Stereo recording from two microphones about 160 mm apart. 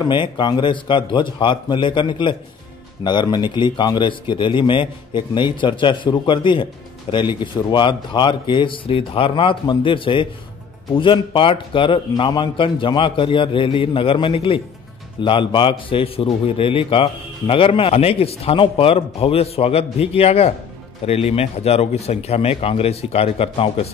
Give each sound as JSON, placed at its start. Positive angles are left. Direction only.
{"t": 0.0, "sound": "a man's voice", "side_deg": 30}